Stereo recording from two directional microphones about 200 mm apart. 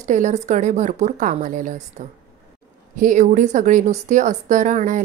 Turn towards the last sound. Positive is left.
turn(degrees=-40)  # may be behind; listen again after turning